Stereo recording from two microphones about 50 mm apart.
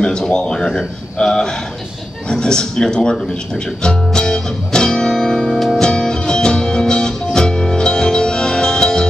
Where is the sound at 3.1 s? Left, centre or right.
Centre.